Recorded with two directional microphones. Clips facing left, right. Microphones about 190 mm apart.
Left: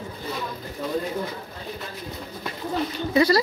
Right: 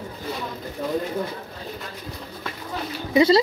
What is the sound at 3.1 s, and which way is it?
Speech, 25° right (ahead or behind).